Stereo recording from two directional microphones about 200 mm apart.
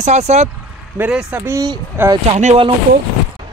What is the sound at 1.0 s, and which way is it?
Speech, 5° right (ahead or behind).